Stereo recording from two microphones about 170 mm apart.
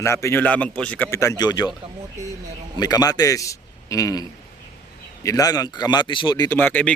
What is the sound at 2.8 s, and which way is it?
A man's voice, 20° left (ahead or behind).